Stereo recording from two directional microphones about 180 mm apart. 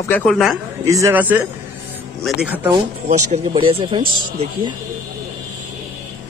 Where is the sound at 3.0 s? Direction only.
40° right (ahead or behind).